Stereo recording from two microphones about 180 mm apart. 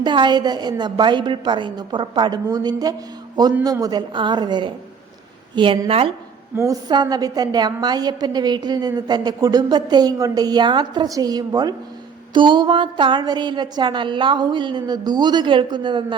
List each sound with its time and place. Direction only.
0.0 s a woman's voice: 25° right (ahead or behind)